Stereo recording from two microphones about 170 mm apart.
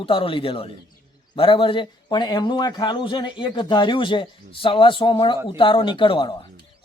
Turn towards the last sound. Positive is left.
turn(degrees=30)  # may be behind; listen again after turning